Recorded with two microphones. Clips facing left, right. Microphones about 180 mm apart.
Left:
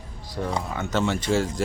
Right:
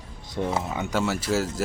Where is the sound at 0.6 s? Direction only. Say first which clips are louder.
Right 1 dB; 25° right (ahead or behind).